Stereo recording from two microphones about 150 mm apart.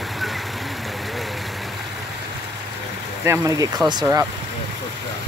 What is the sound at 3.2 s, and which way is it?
Speech, 25° right (ahead or behind).